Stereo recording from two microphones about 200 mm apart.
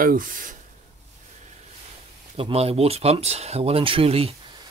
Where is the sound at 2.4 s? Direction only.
30° right (ahead or behind).